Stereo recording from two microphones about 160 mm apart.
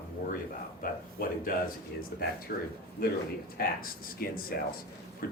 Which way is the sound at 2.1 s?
85° left.